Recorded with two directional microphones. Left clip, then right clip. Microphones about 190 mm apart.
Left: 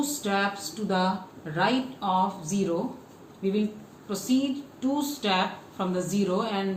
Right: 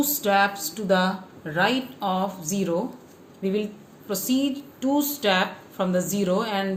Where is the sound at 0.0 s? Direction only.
55° right (ahead or behind).